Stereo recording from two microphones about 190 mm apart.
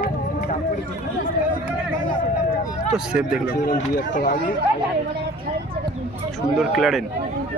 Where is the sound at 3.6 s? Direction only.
45° left (ahead or behind).